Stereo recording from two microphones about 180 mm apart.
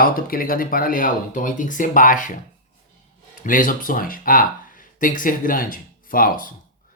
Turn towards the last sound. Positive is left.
turn(degrees=50)  # may be behind; listen again after turning